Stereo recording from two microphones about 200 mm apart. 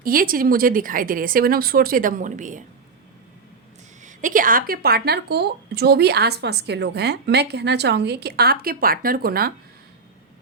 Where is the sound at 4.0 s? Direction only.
40° right (ahead or behind).